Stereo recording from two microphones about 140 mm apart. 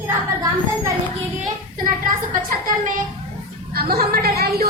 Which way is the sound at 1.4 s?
70° right (ahead or behind).